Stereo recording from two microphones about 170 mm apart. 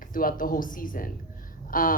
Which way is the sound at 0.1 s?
55° left (ahead or behind).